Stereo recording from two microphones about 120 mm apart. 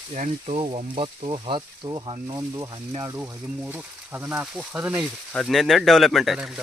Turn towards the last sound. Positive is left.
turn(degrees=0)  # may be behind; listen again after turning